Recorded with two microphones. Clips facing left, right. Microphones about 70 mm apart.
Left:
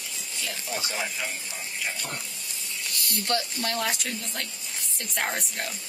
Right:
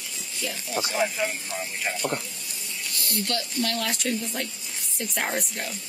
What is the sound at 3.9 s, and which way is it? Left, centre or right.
Speech, centre.